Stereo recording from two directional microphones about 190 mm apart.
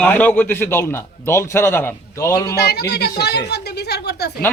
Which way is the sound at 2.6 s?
55° left (ahead or behind).